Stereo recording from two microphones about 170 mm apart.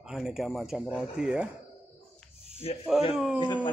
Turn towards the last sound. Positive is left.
turn(degrees=25)  # may be behind; listen again after turning